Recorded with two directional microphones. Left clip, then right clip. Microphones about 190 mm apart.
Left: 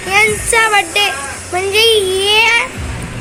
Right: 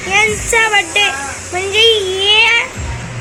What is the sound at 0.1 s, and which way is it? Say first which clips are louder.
A child's voice: left 1 dB; 5° left (ahead or behind).